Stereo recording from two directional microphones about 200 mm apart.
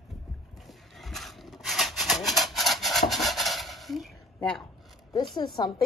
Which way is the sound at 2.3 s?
Centre (ahead or behind).